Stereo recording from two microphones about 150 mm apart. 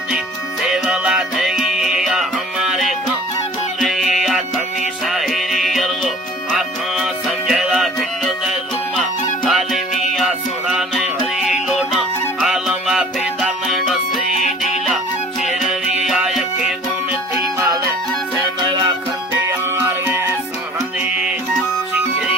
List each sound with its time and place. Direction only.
0.6 s music: 5° right (ahead or behind)
9.5 s music: centre (ahead or behind)
15.4 s music: centre (ahead or behind)
19.5 s music: 15° right (ahead or behind)